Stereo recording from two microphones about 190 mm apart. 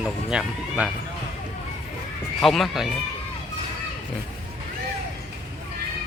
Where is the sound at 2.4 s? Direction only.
Centre (ahead or behind).